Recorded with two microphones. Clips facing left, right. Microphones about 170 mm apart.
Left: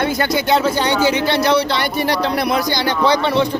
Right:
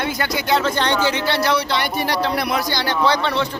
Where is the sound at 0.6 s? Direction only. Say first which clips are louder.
Left 3 dB; 10° left (ahead or behind); by 2.5 s 25° left (ahead or behind).